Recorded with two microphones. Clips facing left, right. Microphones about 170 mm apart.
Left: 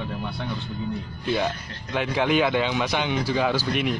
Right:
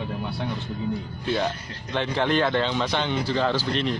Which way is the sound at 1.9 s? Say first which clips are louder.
Left 1 dB; 10° left (ahead or behind).